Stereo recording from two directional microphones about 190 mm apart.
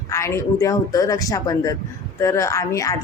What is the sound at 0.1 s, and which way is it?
Speech, 15° left (ahead or behind).